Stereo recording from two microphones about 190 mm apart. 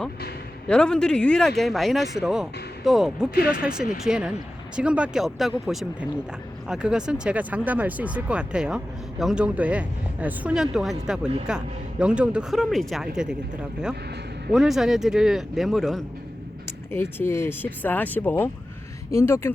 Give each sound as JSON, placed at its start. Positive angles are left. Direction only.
{"t": 0.7, "sound": "speech", "side_deg": 5}
{"t": 3.3, "sound": "speech", "side_deg": 55}
{"t": 3.6, "sound": "speech", "side_deg": -5}
{"t": 14.5, "sound": "speech", "side_deg": 0}
{"t": 16.6, "sound": "speech", "side_deg": 15}